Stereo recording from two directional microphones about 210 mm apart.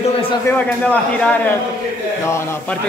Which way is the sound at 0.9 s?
10° left (ahead or behind).